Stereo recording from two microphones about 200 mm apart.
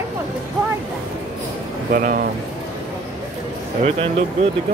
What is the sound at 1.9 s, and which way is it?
Speech, 45° right (ahead or behind).